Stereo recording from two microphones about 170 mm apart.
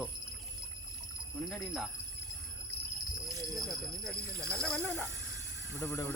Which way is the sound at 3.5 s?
Centre (ahead or behind).